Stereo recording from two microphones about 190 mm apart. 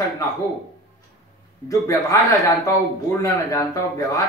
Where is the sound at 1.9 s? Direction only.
15° left (ahead or behind).